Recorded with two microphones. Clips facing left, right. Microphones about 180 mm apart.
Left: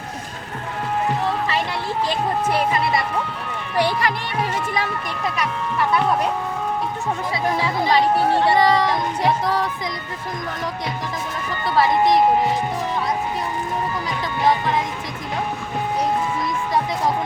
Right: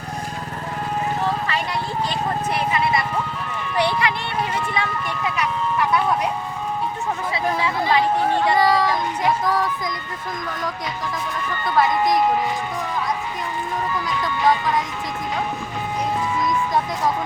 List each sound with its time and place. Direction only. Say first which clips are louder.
3.8 s speech: left 1 dB; 45° left (ahead or behind)
7.9 s speech: left 3 dB; 30° left (ahead or behind)